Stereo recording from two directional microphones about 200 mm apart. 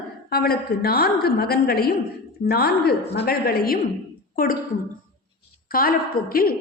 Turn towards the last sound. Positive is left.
turn(degrees=45)  # may be behind; listen again after turning